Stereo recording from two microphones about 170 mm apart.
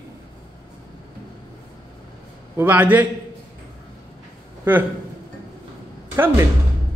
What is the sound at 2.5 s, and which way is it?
Speech, 10° right (ahead or behind).